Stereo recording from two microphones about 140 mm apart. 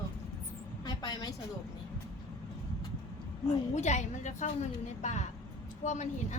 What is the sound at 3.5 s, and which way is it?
A woman's voice, 55° left (ahead or behind).